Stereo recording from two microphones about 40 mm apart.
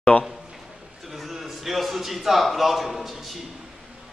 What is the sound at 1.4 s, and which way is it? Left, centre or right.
A man's voice, centre.